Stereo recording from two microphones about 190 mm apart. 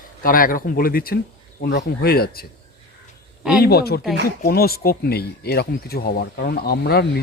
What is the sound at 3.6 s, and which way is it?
Speech, 55° left (ahead or behind).